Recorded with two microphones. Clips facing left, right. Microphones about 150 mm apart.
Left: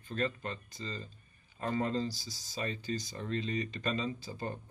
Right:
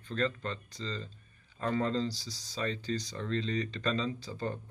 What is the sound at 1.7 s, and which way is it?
Speech, 10° left (ahead or behind).